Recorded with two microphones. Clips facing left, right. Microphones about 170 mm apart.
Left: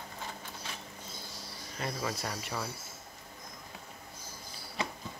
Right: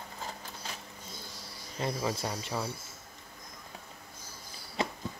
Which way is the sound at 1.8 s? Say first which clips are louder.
Right 3 dB; 25° right (ahead or behind).